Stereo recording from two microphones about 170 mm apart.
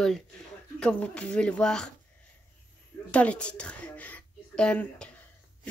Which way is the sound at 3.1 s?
5° left (ahead or behind).